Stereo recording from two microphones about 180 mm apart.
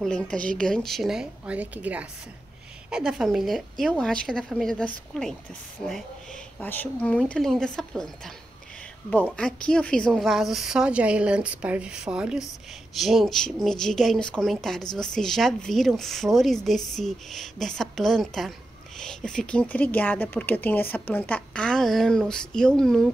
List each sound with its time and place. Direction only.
0.0 s speech: 5° left (ahead or behind)
6.6 s speech: 10° left (ahead or behind)
9.4 s speech: 5° left (ahead or behind)